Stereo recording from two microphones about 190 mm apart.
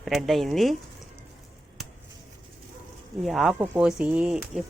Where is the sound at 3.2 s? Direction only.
Centre (ahead or behind).